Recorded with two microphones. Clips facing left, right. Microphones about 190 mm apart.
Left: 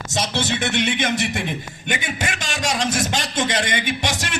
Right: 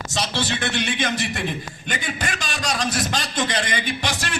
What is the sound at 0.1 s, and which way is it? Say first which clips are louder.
A man's voice: left 2 dB; 20° left (ahead or behind).